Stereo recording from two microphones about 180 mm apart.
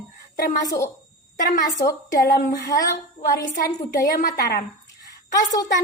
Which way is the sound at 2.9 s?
55° left (ahead or behind).